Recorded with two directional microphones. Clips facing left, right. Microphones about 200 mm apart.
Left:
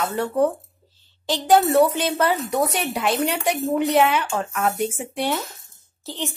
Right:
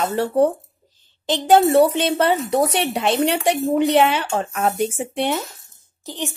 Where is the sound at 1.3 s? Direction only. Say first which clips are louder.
Right 3 dB; 25° right (ahead or behind).